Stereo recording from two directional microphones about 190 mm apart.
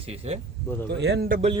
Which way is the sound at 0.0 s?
30° right (ahead or behind).